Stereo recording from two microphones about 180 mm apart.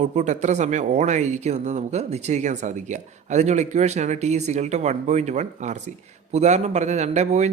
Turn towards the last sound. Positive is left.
turn(degrees=-40)  # may be behind; listen again after turning